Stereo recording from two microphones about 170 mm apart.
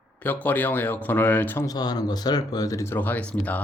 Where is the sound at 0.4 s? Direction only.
10° left (ahead or behind).